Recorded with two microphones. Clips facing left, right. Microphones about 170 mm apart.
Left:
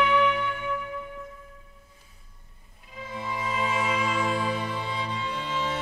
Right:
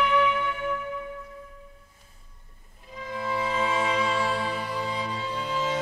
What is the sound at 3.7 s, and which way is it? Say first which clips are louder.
Music: right 1 dB; 30° right (ahead or behind).